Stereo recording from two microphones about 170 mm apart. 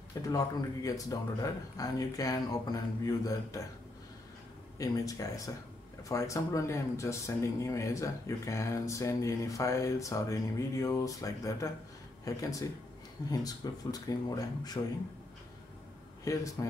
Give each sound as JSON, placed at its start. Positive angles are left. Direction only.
{"t": 0.2, "sound": "speech", "side_deg": 20}
{"t": 4.7, "sound": "speech", "side_deg": 20}
{"t": 16.3, "sound": "speech", "side_deg": 20}